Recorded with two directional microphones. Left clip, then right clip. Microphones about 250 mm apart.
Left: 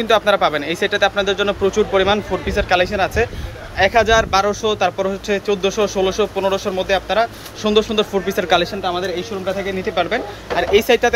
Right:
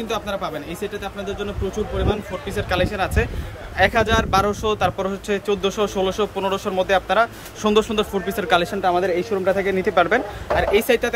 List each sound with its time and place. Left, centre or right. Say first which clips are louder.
0.1 s speech: left 12 dB; centre
8.9 s speech: right 2 dB; centre